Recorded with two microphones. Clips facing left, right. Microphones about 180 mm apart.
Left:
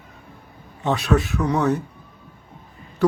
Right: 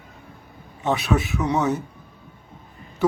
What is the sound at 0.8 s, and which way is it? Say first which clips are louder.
Speech: left 2 dB; 20° right (ahead or behind).